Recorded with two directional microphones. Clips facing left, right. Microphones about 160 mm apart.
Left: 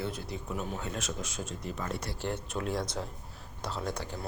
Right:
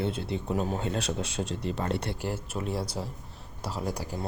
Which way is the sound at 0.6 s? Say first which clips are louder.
Right 6 dB; 30° right (ahead or behind).